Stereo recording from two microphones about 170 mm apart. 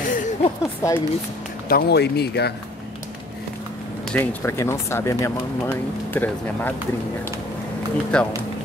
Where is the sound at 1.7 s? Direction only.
75° left (ahead or behind).